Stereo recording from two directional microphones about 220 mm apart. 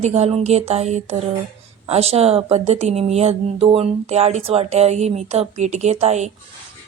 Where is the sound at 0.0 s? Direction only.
30° right (ahead or behind).